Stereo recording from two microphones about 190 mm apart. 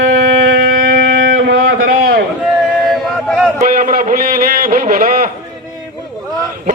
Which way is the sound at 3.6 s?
45° right (ahead or behind).